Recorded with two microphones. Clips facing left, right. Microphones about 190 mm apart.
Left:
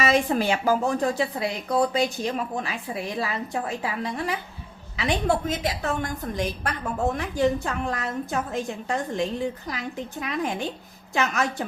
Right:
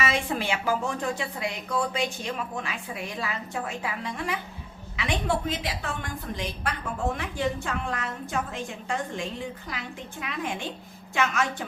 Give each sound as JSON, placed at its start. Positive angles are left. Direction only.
{"t": 0.0, "sound": "a woman's voice", "side_deg": 40}